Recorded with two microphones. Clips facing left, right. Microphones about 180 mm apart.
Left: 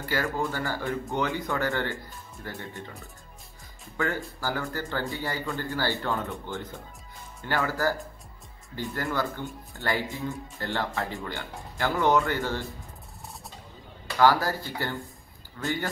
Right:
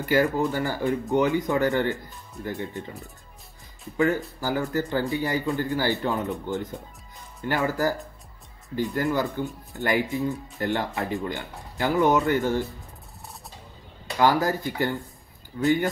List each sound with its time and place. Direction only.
0.0 s speech: 20° right (ahead or behind)
3.9 s speech: 15° right (ahead or behind)
14.1 s speech: 20° right (ahead or behind)